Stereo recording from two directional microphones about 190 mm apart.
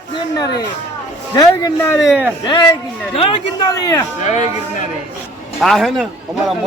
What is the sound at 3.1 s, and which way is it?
Speech, 25° left (ahead or behind).